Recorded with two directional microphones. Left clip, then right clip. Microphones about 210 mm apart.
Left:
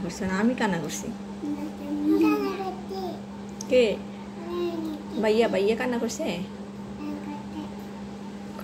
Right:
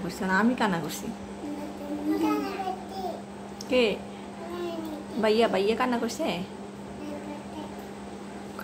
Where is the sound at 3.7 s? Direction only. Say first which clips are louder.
Left 3 dB; 10° right (ahead or behind).